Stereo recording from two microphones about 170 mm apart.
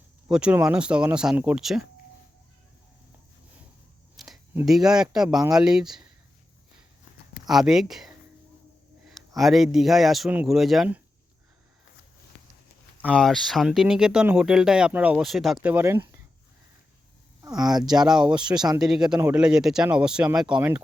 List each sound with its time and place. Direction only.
0.3 s speech: 5° right (ahead or behind)
4.2 s a sound: centre (ahead or behind)
4.6 s speech: centre (ahead or behind)
7.4 s speech: centre (ahead or behind)
13.1 s speech: centre (ahead or behind)
15.7 s speech: 15° right (ahead or behind)
17.6 s speech: 25° right (ahead or behind)
18.3 s speech: 5° right (ahead or behind)